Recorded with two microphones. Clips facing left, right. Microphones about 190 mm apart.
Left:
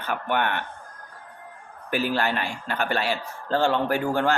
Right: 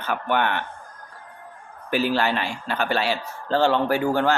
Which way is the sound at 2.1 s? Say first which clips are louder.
Right 2 dB; 50° left (ahead or behind).